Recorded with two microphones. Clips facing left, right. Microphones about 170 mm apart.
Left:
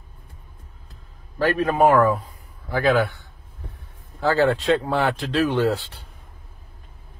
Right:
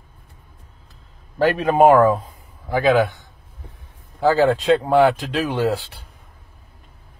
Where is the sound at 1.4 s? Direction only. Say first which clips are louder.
Right 4 dB; 20° right (ahead or behind).